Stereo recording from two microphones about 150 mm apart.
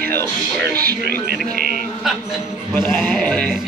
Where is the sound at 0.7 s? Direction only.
85° right.